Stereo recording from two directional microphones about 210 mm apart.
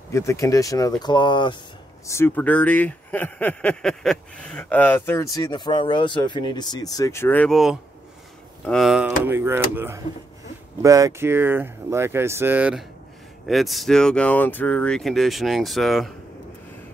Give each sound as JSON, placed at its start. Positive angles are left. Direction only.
{"t": 0.1, "sound": "speech", "side_deg": 15}
{"t": 2.0, "sound": "speech", "side_deg": 10}